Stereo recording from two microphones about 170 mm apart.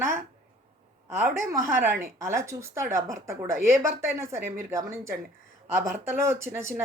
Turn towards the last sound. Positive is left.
turn(degrees=-15)  # may be behind; listen again after turning